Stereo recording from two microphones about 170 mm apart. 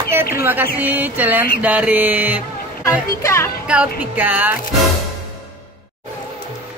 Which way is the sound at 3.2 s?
15° left (ahead or behind).